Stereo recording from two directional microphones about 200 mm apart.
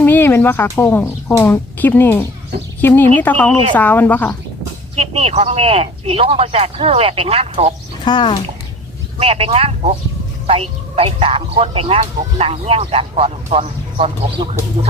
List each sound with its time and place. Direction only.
0.0 s a woman's voice: 10° left (ahead or behind)
4.9 s speech: 30° right (ahead or behind)
8.0 s speech: 20° left (ahead or behind)
9.1 s speech: 30° right (ahead or behind)